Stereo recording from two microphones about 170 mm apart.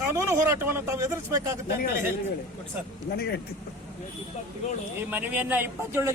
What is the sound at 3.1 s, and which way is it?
Speech, 70° left (ahead or behind).